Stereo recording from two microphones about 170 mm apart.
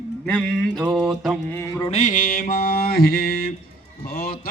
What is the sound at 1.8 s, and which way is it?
A man's voice, 45° left (ahead or behind).